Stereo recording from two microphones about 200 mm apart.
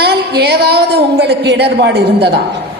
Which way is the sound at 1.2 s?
55° right (ahead or behind).